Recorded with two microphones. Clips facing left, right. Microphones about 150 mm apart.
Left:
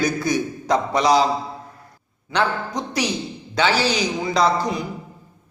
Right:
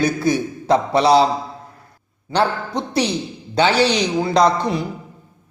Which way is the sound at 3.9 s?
5° left (ahead or behind).